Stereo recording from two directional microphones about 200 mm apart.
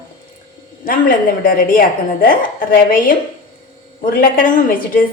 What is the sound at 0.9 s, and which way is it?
A woman's voice, 45° left (ahead or behind).